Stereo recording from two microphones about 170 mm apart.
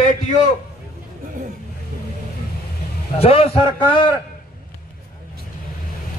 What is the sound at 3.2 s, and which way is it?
Speech, 35° left (ahead or behind).